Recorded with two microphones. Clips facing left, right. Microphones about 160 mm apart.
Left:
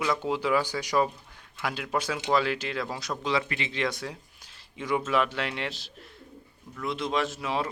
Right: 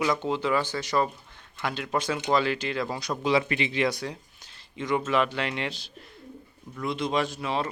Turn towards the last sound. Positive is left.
turn(degrees=5)  # may be behind; listen again after turning